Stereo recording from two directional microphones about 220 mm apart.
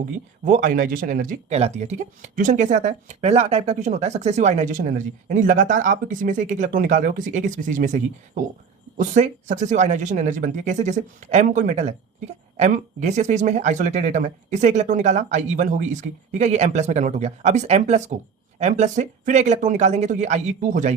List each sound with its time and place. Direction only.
0.4 s speech: 35° right (ahead or behind)